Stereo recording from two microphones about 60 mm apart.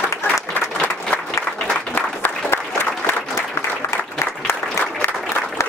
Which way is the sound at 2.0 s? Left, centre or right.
Left.